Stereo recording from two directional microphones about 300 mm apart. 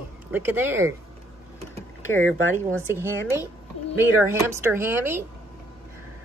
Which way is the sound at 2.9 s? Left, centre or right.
Centre.